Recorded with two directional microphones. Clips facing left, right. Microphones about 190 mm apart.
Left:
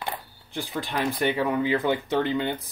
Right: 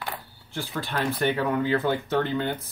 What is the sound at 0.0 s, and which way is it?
Speech, 20° left (ahead or behind).